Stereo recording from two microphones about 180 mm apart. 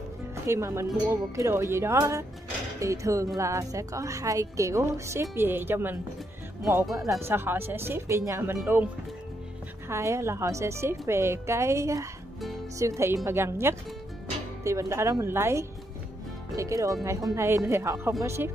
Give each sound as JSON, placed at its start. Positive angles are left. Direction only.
{"t": 0.5, "sound": "a woman's voice", "side_deg": -15}